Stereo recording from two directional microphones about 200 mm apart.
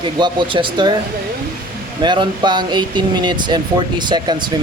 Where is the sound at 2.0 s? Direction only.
20° right (ahead or behind).